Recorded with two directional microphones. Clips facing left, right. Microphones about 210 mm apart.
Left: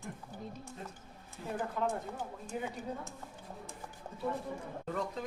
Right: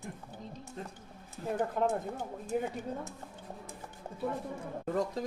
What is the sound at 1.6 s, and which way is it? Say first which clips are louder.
Speech: right 4 dB; 45° right (ahead or behind).